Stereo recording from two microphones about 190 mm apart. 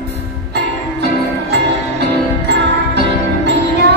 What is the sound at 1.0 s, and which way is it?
Music, 60° right (ahead or behind).